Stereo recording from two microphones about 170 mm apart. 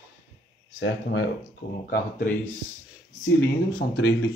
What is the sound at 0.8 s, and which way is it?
Speech, 90° left.